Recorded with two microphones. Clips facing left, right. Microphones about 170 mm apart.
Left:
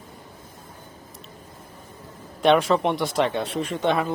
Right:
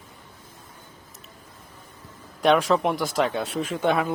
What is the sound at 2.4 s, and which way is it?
Speech, centre (ahead or behind).